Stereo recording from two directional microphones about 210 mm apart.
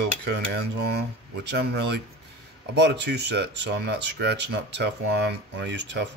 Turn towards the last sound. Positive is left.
turn(degrees=-55)  # may be behind; listen again after turning